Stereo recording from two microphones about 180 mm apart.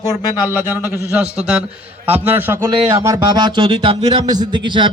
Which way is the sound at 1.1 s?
5° right (ahead or behind).